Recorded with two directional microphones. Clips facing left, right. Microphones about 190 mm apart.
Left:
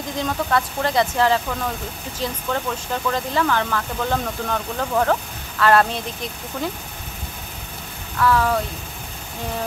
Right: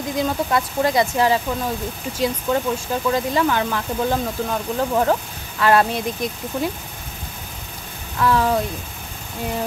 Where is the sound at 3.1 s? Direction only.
15° right (ahead or behind).